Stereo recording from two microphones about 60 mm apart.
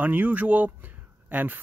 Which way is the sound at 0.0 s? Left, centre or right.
Right.